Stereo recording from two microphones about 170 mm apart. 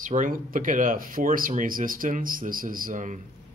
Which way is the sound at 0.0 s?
50° right (ahead or behind).